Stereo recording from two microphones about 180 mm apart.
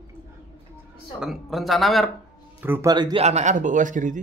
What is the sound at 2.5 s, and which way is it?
Speech, 10° right (ahead or behind).